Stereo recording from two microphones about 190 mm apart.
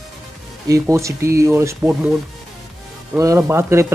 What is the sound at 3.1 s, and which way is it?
Speech, 15° right (ahead or behind).